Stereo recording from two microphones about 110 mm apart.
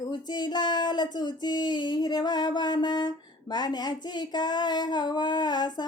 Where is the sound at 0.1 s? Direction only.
40° left (ahead or behind).